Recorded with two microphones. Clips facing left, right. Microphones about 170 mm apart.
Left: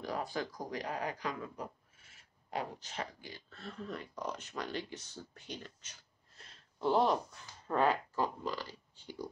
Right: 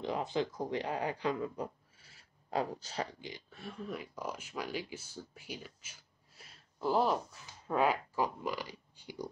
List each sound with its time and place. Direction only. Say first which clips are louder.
0.0 s speech: right 4 dB; 20° right (ahead or behind)
3.2 s speech: right 3 dB; 15° right (ahead or behind)